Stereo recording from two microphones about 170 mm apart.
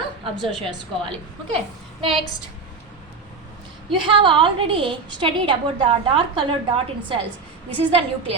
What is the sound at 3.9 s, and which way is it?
A woman's voice, 30° right (ahead or behind).